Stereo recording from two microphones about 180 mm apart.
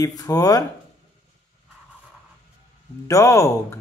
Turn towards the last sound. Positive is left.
turn(degrees=15)  # may be behind; listen again after turning